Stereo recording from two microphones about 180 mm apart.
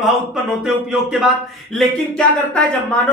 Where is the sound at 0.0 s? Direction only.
Centre (ahead or behind).